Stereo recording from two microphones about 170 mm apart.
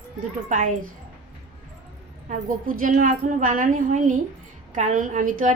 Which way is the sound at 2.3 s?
50° right (ahead or behind).